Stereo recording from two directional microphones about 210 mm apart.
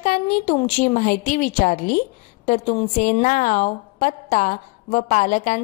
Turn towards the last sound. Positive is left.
turn(degrees=35)  # may be behind; listen again after turning